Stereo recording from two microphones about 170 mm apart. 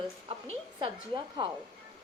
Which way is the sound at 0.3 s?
30° right (ahead or behind).